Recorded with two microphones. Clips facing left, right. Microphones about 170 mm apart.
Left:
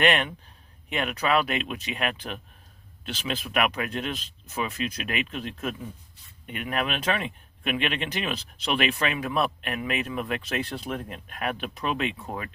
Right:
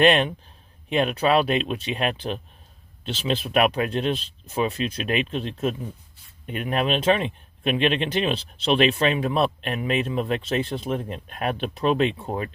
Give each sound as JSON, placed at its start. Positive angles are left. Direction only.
{"t": 0.0, "sound": "speech", "side_deg": -30}